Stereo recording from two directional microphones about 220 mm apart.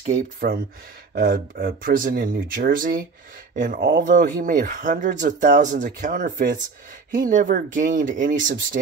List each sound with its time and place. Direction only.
0.4 s speech: 45° right (ahead or behind)